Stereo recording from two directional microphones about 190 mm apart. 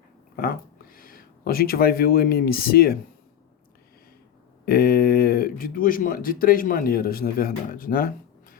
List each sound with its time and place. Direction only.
0.3 s speech: 50° left (ahead or behind)
4.6 s speech: 50° left (ahead or behind)